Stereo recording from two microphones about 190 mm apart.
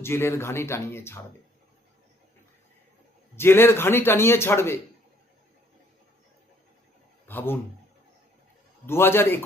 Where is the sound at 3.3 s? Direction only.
10° left (ahead or behind).